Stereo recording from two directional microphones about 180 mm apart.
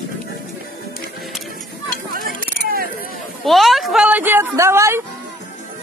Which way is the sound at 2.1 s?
55° right (ahead or behind).